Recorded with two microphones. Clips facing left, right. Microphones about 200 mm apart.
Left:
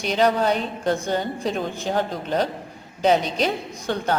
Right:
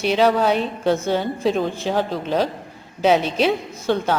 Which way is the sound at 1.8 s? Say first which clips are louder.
Right 2 dB; centre (ahead or behind).